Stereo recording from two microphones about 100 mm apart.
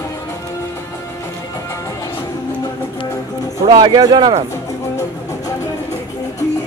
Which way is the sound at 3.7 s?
45° right (ahead or behind).